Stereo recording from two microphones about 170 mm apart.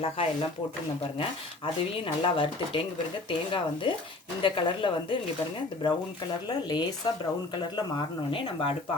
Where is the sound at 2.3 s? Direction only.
30° left (ahead or behind).